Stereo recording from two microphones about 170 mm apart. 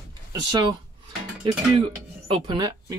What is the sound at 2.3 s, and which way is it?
Speech, 25° right (ahead or behind).